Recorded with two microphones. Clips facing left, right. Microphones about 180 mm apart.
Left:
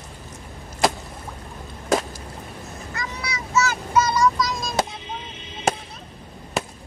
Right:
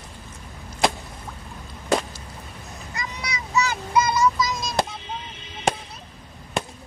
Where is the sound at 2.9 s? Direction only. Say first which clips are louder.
Left 1 dB; 15° right (ahead or behind); by 4.8 s centre (ahead or behind).